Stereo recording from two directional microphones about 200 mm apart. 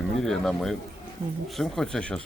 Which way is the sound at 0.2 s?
Centre (ahead or behind).